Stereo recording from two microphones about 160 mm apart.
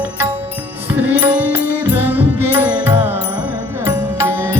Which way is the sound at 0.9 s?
10° right (ahead or behind).